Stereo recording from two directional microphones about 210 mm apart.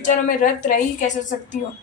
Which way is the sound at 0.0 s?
35° left (ahead or behind).